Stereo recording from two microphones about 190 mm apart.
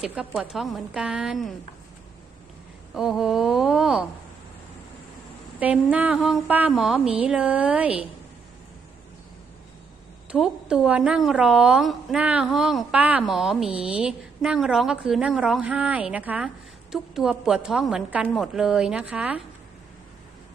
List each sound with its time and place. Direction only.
0.0 s a woman's voice: centre (ahead or behind)
2.9 s a woman's voice: centre (ahead or behind)
5.5 s a woman's voice: 5° right (ahead or behind)
10.3 s a woman's voice: centre (ahead or behind)
13.7 s a woman's voice: 30° right (ahead or behind)
13.9 s a woman's voice: 5° right (ahead or behind)